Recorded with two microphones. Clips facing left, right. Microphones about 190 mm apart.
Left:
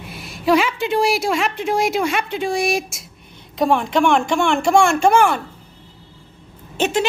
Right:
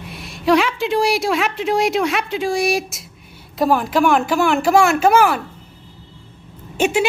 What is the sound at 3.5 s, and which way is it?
A woman's voice, centre (ahead or behind).